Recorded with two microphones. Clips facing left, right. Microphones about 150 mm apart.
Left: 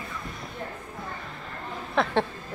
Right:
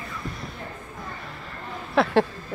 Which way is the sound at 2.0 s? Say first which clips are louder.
Right 4 dB; 5° right (ahead or behind).